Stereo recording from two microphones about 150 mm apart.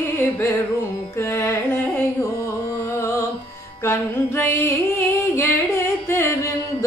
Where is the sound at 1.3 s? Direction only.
15° left (ahead or behind).